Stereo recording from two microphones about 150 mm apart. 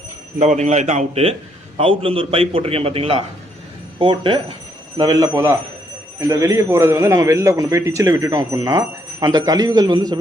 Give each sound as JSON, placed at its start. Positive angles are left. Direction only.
{"t": 0.3, "sound": "a man's voice", "side_deg": -50}